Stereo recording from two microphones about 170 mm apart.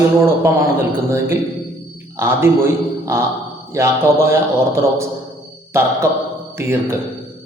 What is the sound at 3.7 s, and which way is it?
Speech, 15° right (ahead or behind).